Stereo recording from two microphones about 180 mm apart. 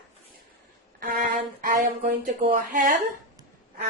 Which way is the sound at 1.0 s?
50° right (ahead or behind).